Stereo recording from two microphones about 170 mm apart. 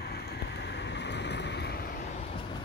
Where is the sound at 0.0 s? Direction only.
70° left (ahead or behind).